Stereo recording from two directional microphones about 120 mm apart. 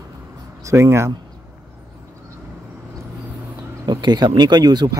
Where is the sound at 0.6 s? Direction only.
25° right (ahead or behind).